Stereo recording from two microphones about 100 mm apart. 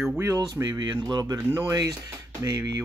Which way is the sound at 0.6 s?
45° right (ahead or behind).